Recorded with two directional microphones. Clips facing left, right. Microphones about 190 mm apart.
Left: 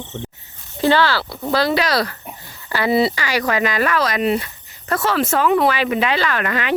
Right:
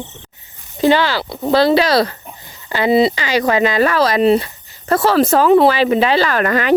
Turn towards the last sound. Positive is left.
turn(degrees=-40)  # may be behind; listen again after turning